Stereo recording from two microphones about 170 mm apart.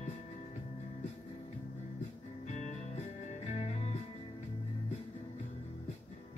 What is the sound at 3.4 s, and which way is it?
Music, 40° left (ahead or behind).